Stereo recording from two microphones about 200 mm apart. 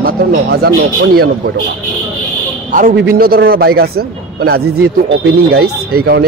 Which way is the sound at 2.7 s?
40° right (ahead or behind).